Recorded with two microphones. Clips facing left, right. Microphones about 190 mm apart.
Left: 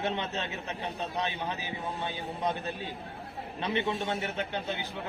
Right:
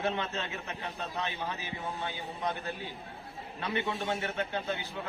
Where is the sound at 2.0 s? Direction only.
20° left (ahead or behind).